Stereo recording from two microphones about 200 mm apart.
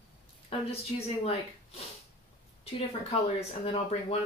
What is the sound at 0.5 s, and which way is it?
Speech, 30° left (ahead or behind).